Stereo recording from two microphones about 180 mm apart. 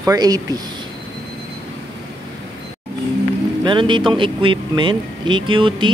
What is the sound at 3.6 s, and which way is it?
Speech, 25° right (ahead or behind).